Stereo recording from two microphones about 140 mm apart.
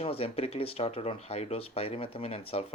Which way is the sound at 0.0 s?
45° left (ahead or behind).